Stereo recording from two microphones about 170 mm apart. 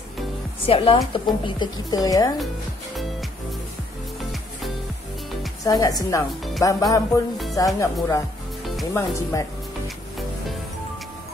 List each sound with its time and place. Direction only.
0.7 s a woman's voice: 30° left (ahead or behind)
5.6 s a woman's voice: 20° left (ahead or behind)